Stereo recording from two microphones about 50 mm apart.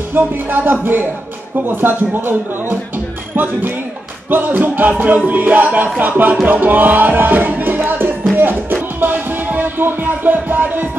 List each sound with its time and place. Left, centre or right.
0.1 s music: right
1.7 s speech: right
3.4 s music: right